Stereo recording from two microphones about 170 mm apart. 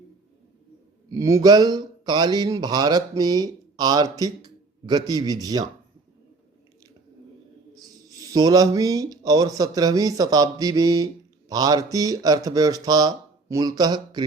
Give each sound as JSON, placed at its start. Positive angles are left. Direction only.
{"t": 1.1, "sound": "speech", "side_deg": -20}
{"t": 8.2, "sound": "speech", "side_deg": -20}